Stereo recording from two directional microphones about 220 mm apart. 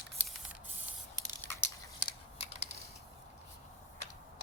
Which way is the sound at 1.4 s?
10° left (ahead or behind).